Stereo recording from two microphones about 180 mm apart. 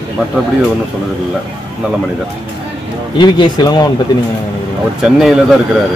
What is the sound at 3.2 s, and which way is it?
Speech, 25° left (ahead or behind).